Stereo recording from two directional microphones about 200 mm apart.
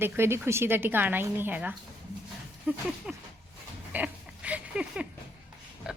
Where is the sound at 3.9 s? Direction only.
5° right (ahead or behind).